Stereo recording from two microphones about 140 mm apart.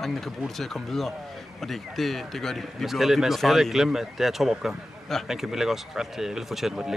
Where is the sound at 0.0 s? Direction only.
Centre (ahead or behind).